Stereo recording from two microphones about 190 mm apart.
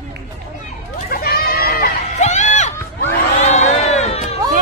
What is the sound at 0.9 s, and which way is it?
Goat, 50° left (ahead or behind).